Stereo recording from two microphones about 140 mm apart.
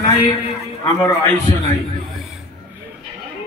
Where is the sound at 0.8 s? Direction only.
25° left (ahead or behind).